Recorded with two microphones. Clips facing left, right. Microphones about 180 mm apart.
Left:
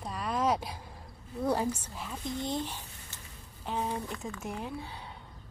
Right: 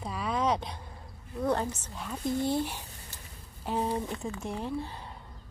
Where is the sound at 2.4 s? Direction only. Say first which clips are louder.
Right 3 dB; 10° right (ahead or behind).